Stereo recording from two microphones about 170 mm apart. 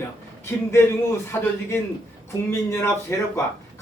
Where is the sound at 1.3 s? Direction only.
15° left (ahead or behind).